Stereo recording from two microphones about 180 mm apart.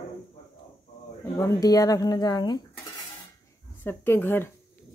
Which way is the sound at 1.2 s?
20° left (ahead or behind).